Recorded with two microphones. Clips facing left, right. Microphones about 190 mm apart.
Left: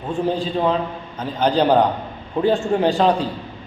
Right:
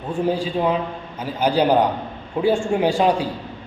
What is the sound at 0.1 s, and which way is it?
A man's voice, 10° right (ahead or behind).